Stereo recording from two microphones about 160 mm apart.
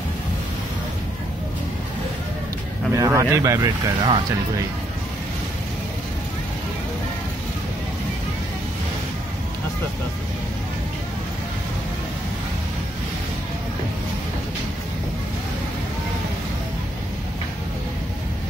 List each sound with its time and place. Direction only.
2.9 s speech: 20° right (ahead or behind)